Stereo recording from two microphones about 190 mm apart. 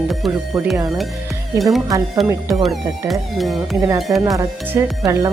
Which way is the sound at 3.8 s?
20° right (ahead or behind).